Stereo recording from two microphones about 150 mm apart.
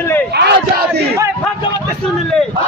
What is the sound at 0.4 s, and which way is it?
Battle cry, 90° right.